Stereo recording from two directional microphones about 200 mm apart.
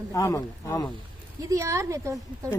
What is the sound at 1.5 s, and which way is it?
Speech, 15° right (ahead or behind).